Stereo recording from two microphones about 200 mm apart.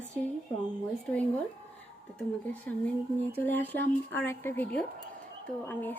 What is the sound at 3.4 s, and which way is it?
A woman's voice, 10° left (ahead or behind).